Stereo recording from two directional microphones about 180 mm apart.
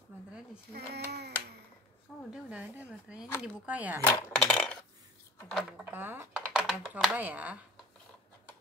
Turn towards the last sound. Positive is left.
turn(degrees=-10)  # may be behind; listen again after turning